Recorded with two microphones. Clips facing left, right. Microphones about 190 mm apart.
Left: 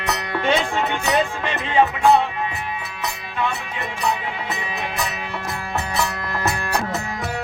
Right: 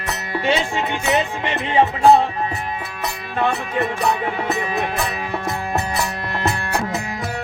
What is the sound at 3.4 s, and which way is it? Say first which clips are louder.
Music: right 6 dB; 50° right (ahead or behind).